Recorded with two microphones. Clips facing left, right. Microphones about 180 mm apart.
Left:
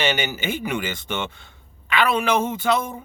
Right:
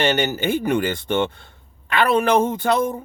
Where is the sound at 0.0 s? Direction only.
55° right (ahead or behind).